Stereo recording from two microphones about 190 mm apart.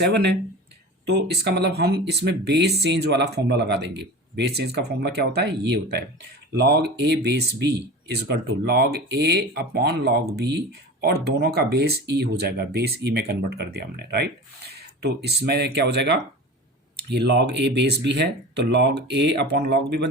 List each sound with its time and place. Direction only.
0.0 s speech: 60° right (ahead or behind)